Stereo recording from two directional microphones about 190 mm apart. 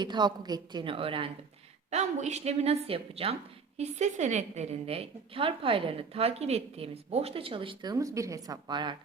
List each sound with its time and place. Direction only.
0.0 s a woman's voice: 25° right (ahead or behind)